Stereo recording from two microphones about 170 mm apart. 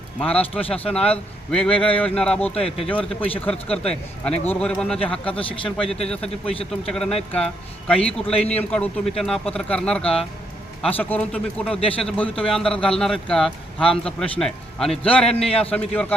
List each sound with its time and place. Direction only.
0.2 s a man's voice: 10° left (ahead or behind)
6.4 s a man's voice: 35° left (ahead or behind)
6.9 s a man's voice: 5° left (ahead or behind)